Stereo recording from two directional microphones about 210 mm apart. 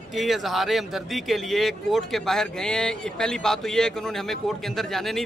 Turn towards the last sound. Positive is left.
turn(degrees=0)  # may be behind; listen again after turning